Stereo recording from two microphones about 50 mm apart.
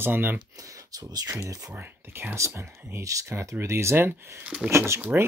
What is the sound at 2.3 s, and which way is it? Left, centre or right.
Speech, right.